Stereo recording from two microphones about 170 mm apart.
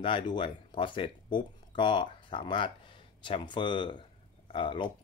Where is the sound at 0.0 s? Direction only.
30° left (ahead or behind).